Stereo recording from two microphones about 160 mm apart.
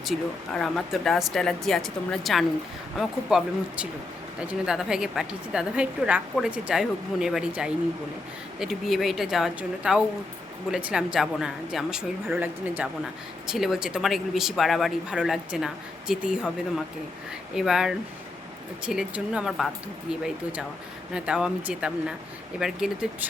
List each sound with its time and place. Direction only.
0.0 s speech: centre (ahead or behind)